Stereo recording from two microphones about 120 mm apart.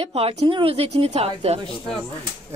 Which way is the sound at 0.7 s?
60° right (ahead or behind).